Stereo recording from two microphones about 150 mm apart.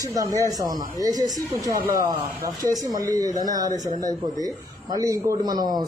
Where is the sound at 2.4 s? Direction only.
25° right (ahead or behind).